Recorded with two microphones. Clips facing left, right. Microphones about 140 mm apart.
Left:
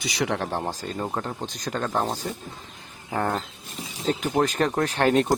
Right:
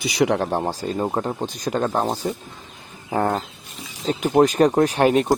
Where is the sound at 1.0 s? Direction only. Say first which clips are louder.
Right 5 dB; 25° right (ahead or behind).